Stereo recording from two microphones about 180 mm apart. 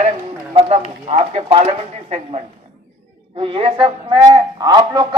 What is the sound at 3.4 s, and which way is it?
A man's voice, 30° right (ahead or behind).